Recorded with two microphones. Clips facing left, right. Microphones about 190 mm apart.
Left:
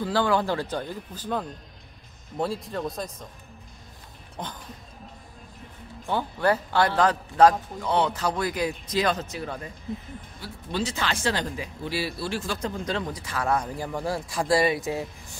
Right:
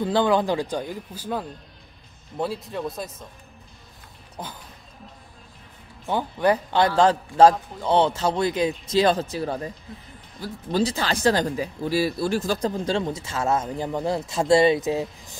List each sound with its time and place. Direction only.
0.0 s speech: 20° right (ahead or behind); by 3.3 s 5° right (ahead or behind)
4.4 s speech: 5° right (ahead or behind)
6.0 s speech: 15° right (ahead or behind)
7.0 s speech: 30° right (ahead or behind)